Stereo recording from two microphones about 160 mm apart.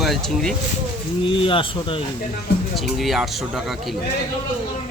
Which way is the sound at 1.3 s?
35° left (ahead or behind).